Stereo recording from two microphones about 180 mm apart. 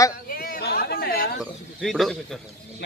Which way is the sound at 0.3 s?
55° left (ahead or behind).